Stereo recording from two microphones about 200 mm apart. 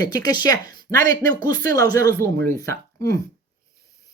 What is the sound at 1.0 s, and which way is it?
Speech, 45° right (ahead or behind).